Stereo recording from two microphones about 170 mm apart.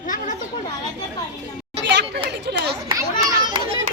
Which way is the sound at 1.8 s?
90° right.